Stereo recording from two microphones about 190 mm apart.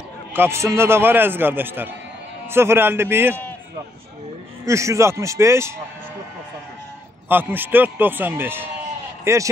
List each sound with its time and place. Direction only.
0.3 s a man's voice: 10° right (ahead or behind)
4.6 s a man's voice: 15° right (ahead or behind)
7.2 s a man's voice: 10° right (ahead or behind)